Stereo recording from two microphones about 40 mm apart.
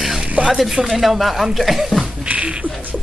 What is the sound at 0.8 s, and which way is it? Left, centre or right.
Speech, centre.